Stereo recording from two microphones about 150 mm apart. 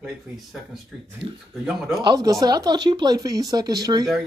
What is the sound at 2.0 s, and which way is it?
Speech, 25° right (ahead or behind).